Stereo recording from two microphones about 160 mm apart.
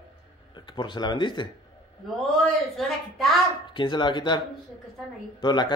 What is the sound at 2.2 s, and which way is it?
A child's voice, centre (ahead or behind).